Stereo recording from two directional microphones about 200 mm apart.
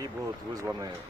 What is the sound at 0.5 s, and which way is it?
Speech, 20° right (ahead or behind).